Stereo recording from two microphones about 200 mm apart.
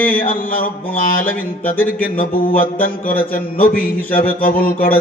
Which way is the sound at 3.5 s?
45° left (ahead or behind).